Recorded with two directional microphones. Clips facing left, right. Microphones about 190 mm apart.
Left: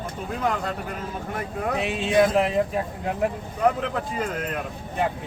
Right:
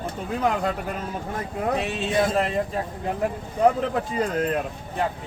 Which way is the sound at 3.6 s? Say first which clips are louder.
Right 3 dB; 30° right (ahead or behind).